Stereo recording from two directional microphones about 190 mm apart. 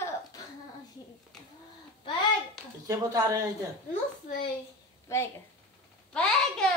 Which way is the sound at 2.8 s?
20° right (ahead or behind).